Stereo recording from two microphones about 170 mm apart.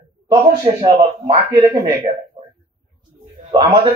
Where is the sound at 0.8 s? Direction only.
25° right (ahead or behind).